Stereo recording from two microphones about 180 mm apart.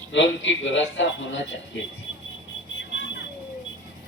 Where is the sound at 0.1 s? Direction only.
90° left.